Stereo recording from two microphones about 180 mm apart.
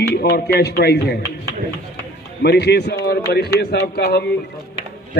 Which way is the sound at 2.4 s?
65° left (ahead or behind).